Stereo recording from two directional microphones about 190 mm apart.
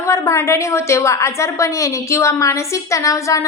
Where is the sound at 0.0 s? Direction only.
15° left (ahead or behind).